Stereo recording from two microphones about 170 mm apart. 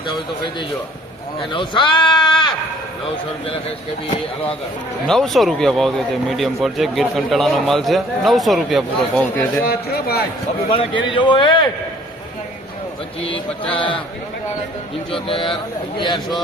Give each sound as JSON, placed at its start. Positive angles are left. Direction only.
{"t": 1.5, "sound": "speech", "side_deg": 30}
{"t": 5.0, "sound": "speech", "side_deg": 0}
{"t": 9.6, "sound": "a man's voice", "side_deg": 65}
{"t": 10.8, "sound": "speech", "side_deg": 30}
{"t": 15.1, "sound": "a man's voice", "side_deg": 30}